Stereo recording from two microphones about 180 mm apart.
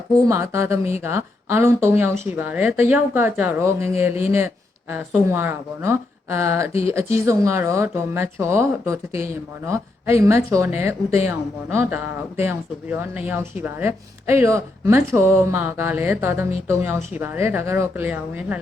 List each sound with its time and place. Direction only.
0.3 s speech: 15° right (ahead or behind)